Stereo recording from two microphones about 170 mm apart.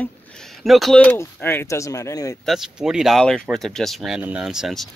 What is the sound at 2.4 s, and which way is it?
Speech, centre (ahead or behind).